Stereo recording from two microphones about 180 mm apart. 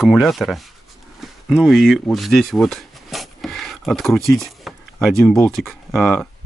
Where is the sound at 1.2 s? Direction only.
Centre (ahead or behind).